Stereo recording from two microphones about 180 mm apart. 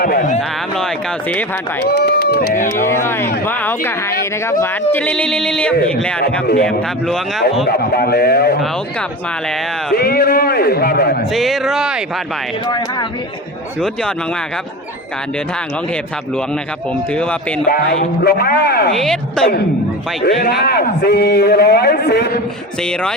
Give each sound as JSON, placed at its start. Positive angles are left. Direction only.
{"t": 0.0, "sound": "speech", "side_deg": 55}
{"t": 0.8, "sound": "speech", "side_deg": 5}
{"t": 1.8, "sound": "speech", "side_deg": 70}
{"t": 2.7, "sound": "speech", "side_deg": 15}
{"t": 7.7, "sound": "a man's voice", "side_deg": 60}
{"t": 9.9, "sound": "a man's voice", "side_deg": 60}
{"t": 11.3, "sound": "speech", "side_deg": 0}
{"t": 12.6, "sound": "speech", "side_deg": 25}
{"t": 16.9, "sound": "speech", "side_deg": 5}
{"t": 18.2, "sound": "a man's voice", "side_deg": 55}
{"t": 18.9, "sound": "speech", "side_deg": 0}
{"t": 20.2, "sound": "a man's voice", "side_deg": 65}
{"t": 22.8, "sound": "speech", "side_deg": 5}